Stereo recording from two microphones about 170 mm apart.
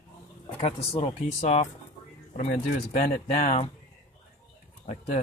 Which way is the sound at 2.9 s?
40° left (ahead or behind).